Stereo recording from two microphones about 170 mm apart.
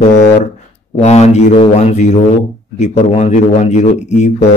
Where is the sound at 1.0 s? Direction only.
40° left (ahead or behind).